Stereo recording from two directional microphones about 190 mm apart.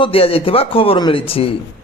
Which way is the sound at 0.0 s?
30° left (ahead or behind).